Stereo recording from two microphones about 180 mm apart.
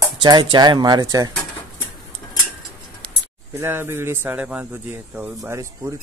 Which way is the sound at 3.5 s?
15° right (ahead or behind).